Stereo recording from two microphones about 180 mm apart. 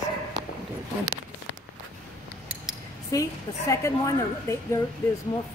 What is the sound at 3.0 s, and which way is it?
Speech, 15° left (ahead or behind).